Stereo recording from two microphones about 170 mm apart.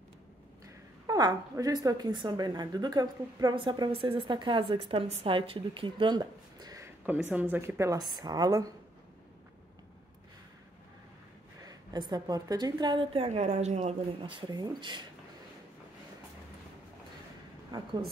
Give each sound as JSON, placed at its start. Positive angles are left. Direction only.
{"t": 1.0, "sound": "a woman's voice", "side_deg": -20}
{"t": 7.1, "sound": "a woman's voice", "side_deg": -10}
{"t": 11.6, "sound": "a woman's voice", "side_deg": -25}
{"t": 17.7, "sound": "a sound", "side_deg": -25}